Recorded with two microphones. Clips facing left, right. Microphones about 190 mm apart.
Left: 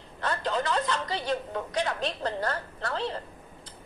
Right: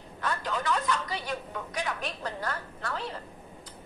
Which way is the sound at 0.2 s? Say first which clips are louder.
Left 3 dB; 30° left (ahead or behind).